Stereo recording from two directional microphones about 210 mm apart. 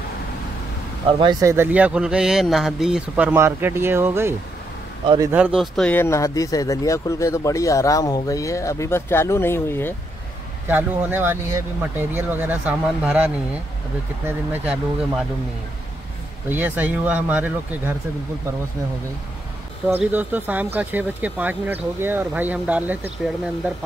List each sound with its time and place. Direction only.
1.2 s speech: 15° right (ahead or behind)
5.0 s a man's voice: 20° right (ahead or behind)
5.3 s speech: 5° right (ahead or behind); by 9.9 s 10° left (ahead or behind)
10.7 s speech: 10° right (ahead or behind)
16.4 s speech: 10° right (ahead or behind)
19.9 s speech: 10° right (ahead or behind)